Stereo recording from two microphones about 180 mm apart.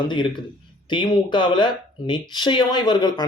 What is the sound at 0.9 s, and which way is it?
Speech, 25° left (ahead or behind).